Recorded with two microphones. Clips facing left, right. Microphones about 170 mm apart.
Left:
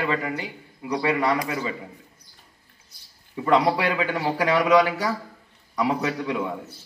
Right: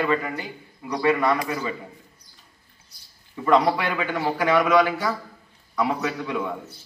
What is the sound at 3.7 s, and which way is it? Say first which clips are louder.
A man's voice: left 2 dB; 35° left (ahead or behind).